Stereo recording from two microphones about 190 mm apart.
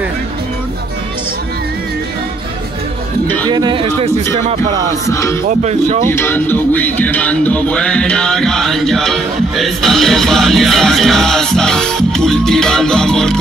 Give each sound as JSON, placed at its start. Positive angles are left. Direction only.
{"t": 3.4, "sound": "a sound", "side_deg": -25}
{"t": 5.1, "sound": "music", "side_deg": 15}
{"t": 5.5, "sound": "speech", "side_deg": -40}
{"t": 6.0, "sound": "speech", "side_deg": 10}